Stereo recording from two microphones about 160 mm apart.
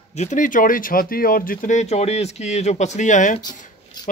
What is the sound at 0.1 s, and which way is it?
Speech, 45° left (ahead or behind).